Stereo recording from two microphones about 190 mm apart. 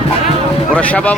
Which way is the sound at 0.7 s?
5° left (ahead or behind).